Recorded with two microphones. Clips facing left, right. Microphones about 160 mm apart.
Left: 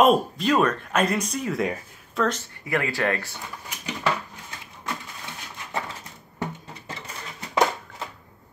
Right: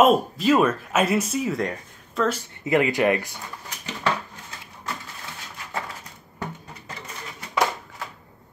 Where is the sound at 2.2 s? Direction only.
10° right (ahead or behind).